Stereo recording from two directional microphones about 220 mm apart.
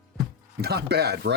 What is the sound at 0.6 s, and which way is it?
Speech, 45° right (ahead or behind).